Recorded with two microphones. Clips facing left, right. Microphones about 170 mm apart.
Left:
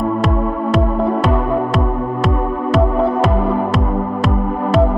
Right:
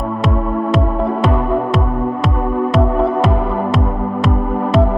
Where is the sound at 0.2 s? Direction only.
Centre (ahead or behind).